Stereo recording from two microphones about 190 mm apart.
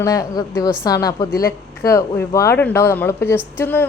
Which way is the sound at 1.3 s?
50° left (ahead or behind).